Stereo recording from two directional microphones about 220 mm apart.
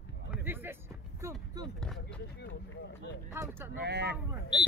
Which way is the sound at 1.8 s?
5° left (ahead or behind).